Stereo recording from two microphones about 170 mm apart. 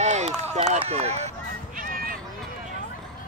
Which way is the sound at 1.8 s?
55° right (ahead or behind).